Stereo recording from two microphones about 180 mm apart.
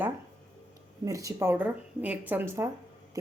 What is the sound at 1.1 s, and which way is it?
Speech, 20° right (ahead or behind).